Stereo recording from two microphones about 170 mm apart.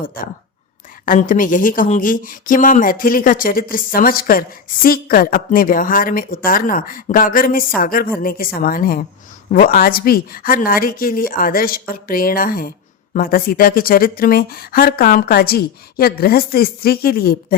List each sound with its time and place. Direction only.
0.0 s speech: 55° left (ahead or behind)